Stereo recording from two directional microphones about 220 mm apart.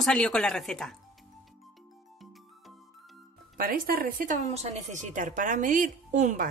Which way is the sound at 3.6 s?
40° right (ahead or behind).